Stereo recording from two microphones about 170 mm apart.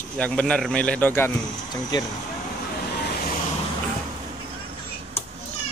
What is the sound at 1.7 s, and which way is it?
Speech, 25° left (ahead or behind).